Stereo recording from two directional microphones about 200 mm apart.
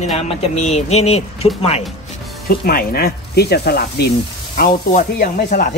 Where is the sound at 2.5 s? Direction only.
50° left (ahead or behind).